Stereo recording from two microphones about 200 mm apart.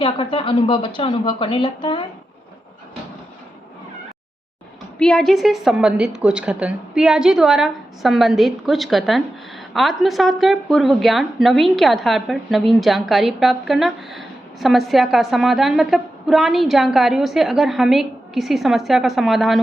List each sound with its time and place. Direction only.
0.0 s a woman's voice: 25° left (ahead or behind)
4.9 s a woman's voice: 5° left (ahead or behind)